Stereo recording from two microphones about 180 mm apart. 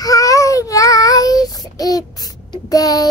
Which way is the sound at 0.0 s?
20° left (ahead or behind).